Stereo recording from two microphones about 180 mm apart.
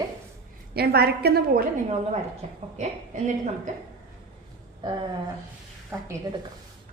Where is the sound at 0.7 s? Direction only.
60° right (ahead or behind).